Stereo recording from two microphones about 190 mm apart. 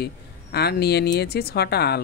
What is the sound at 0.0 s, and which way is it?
Speech, 60° left (ahead or behind).